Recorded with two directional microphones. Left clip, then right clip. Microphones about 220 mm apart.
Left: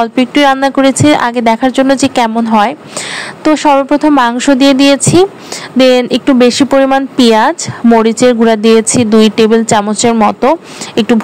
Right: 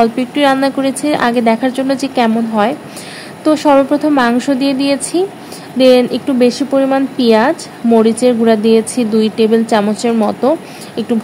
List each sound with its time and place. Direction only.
0.0 s speech: 25° left (ahead or behind)